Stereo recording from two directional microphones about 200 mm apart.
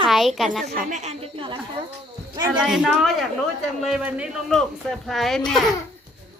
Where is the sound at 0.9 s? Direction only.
35° right (ahead or behind).